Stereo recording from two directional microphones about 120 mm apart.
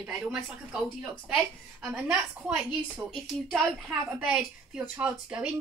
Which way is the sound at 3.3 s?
5° left (ahead or behind).